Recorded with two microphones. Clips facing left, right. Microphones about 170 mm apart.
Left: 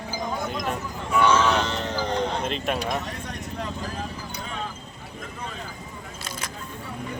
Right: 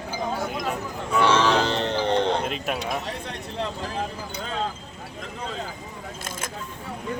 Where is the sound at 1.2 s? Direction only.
30° right (ahead or behind).